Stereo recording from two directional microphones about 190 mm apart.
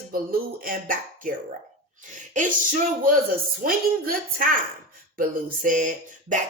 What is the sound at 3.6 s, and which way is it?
Speech, 50° right (ahead or behind).